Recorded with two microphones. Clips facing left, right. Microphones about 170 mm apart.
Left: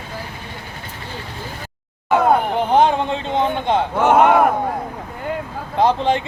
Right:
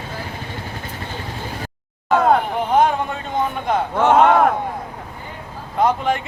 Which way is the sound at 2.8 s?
25° left (ahead or behind).